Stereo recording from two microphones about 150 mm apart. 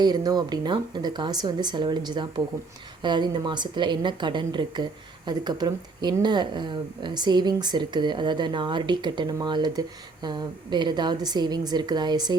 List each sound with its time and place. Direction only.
0.0 s a woman's voice: 25° right (ahead or behind)